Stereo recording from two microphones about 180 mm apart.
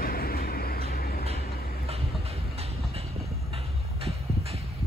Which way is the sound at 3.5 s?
35° right (ahead or behind).